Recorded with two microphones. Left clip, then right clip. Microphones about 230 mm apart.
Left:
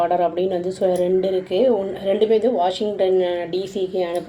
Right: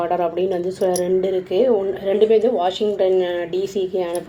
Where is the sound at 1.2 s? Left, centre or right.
Right.